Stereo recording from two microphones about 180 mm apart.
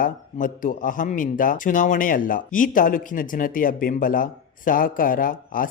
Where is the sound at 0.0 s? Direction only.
50° left (ahead or behind).